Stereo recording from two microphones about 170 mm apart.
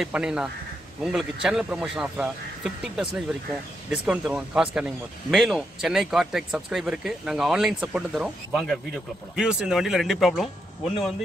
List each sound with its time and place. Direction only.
0.0 s speech: 5° right (ahead or behind)